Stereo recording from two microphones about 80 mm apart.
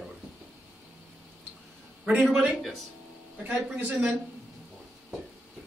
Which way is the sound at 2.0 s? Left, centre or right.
Centre.